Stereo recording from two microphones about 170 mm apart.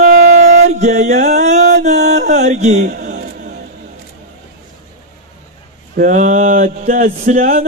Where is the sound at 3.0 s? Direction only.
45° right (ahead or behind).